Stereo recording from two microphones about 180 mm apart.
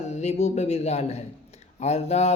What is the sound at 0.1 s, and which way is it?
Speech, 40° left (ahead or behind).